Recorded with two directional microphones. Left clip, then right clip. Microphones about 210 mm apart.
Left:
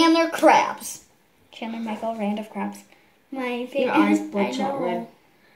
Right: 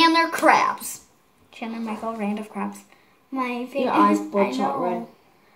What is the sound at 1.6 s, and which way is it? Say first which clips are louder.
Speech: even; 25° right (ahead or behind).